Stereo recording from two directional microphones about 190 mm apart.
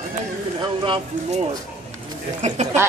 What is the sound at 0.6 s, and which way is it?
Speech, 25° right (ahead or behind).